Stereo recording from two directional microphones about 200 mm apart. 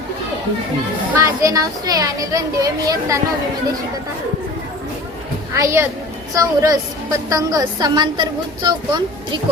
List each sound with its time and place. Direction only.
1.2 s a woman's voice: 15° right (ahead or behind)
5.5 s a woman's voice: 15° right (ahead or behind)